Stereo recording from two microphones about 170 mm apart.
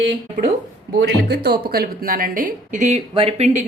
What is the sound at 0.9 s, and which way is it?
Speech, 80° right.